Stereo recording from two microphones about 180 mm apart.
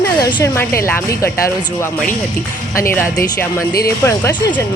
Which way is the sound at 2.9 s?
15° left (ahead or behind).